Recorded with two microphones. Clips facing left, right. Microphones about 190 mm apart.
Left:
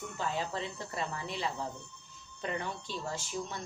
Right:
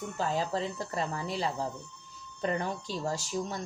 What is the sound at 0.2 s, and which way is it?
Speech, 40° right (ahead or behind).